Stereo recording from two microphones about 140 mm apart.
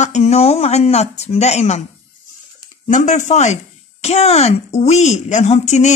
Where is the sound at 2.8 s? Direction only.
60° left (ahead or behind).